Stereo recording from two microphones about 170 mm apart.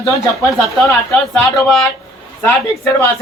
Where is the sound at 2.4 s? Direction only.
15° left (ahead or behind).